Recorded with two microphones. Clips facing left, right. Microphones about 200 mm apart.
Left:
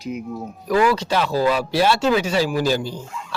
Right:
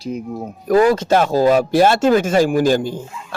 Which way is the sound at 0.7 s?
45° right (ahead or behind).